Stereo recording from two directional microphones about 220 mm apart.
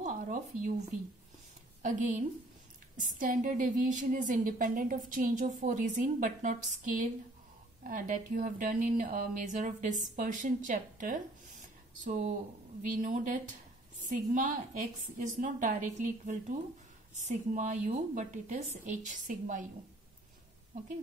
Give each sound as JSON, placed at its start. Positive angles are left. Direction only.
{"t": 0.0, "sound": "speech", "side_deg": -35}
{"t": 1.8, "sound": "a woman's voice", "side_deg": -35}
{"t": 12.9, "sound": "a woman's voice", "side_deg": -35}